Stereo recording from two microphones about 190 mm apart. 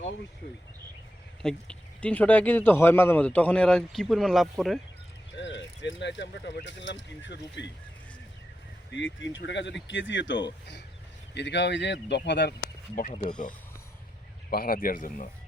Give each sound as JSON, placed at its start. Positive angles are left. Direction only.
{"t": 1.4, "sound": "speech", "side_deg": 5}
{"t": 5.4, "sound": "speech", "side_deg": 70}
{"t": 8.9, "sound": "speech", "side_deg": 80}
{"t": 13.0, "sound": "speech", "side_deg": 45}
{"t": 14.5, "sound": "speech", "side_deg": 50}